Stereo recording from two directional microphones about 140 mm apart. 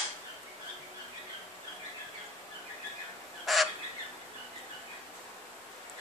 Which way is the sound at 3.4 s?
Centre (ahead or behind).